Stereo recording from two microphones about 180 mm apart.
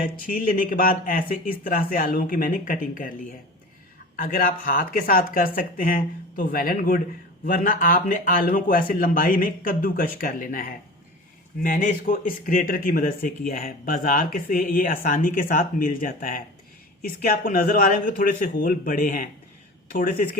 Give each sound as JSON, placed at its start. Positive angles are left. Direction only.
{"t": 0.0, "sound": "speech", "side_deg": 50}
{"t": 4.2, "sound": "speech", "side_deg": 50}